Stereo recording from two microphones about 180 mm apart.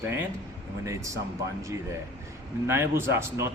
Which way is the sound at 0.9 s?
15° right (ahead or behind).